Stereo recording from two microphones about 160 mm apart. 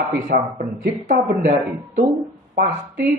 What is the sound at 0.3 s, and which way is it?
Speech, 55° right (ahead or behind).